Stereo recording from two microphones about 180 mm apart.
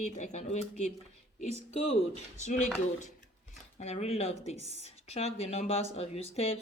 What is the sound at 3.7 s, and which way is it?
A woman's voice, 40° left (ahead or behind).